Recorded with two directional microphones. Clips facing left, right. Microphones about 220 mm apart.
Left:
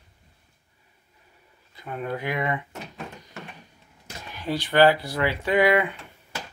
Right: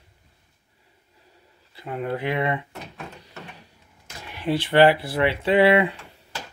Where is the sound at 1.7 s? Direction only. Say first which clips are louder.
Right 3 dB; 25° right (ahead or behind).